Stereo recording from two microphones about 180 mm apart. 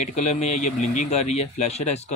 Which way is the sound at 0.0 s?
40° left (ahead or behind).